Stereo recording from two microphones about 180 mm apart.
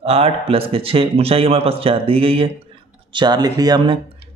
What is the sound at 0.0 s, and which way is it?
A man's voice, 35° right (ahead or behind).